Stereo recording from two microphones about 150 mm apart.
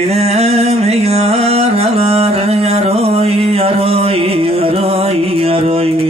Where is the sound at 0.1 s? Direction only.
45° right (ahead or behind).